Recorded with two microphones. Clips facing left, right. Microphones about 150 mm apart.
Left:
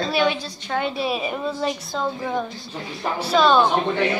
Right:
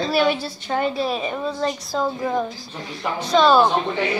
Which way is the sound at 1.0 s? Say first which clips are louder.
Right 1 dB; 10° left (ahead or behind).